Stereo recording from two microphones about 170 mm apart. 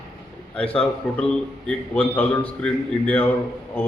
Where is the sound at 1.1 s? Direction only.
5° left (ahead or behind).